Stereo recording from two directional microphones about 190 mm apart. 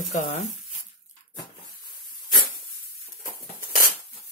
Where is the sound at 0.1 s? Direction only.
35° left (ahead or behind).